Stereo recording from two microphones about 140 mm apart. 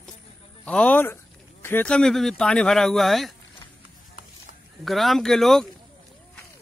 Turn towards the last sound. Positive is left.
turn(degrees=0)  # may be behind; listen again after turning